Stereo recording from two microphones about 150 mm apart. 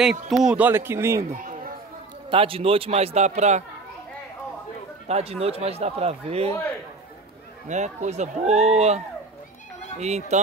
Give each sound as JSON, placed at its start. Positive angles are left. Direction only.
{"t": 0.0, "sound": "speech", "side_deg": -5}
{"t": 1.3, "sound": "a sound", "side_deg": -65}
{"t": 2.3, "sound": "a man's voice", "side_deg": -40}
{"t": 5.0, "sound": "speech", "side_deg": -45}
{"t": 7.6, "sound": "speech", "side_deg": -55}